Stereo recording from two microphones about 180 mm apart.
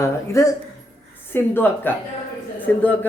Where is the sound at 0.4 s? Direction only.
15° left (ahead or behind).